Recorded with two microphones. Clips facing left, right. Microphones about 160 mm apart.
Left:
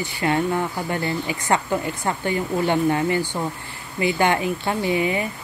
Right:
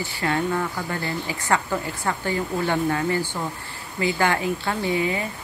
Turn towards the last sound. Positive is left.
turn(degrees=20)  # may be behind; listen again after turning